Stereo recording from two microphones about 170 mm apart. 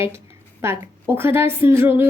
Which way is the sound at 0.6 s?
15° right (ahead or behind).